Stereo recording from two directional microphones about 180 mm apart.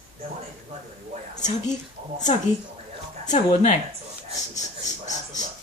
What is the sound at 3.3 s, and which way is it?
Speech, 40° left (ahead or behind).